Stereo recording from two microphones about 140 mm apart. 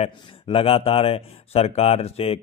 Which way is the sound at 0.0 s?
45° left (ahead or behind).